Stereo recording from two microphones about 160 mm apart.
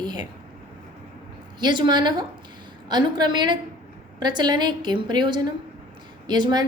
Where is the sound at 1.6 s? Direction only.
30° right (ahead or behind).